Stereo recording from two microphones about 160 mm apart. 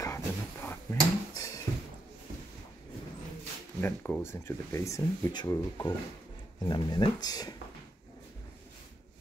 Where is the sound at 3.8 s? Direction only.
10° left (ahead or behind).